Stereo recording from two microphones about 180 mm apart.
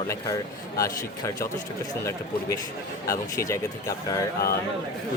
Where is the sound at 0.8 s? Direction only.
15° left (ahead or behind).